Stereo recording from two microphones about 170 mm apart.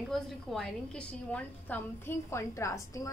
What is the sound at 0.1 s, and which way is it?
A woman's voice, centre (ahead or behind).